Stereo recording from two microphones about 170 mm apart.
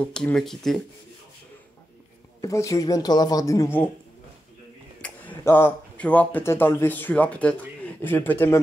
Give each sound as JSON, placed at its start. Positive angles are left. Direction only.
{"t": 0.0, "sound": "speech", "side_deg": 5}
{"t": 2.4, "sound": "speech", "side_deg": 20}
{"t": 5.0, "sound": "speech", "side_deg": 10}